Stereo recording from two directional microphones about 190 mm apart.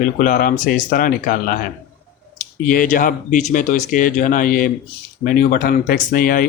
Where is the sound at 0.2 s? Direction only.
50° left (ahead or behind).